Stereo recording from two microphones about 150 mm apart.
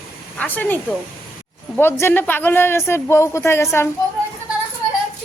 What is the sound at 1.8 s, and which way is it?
Speech, 15° left (ahead or behind).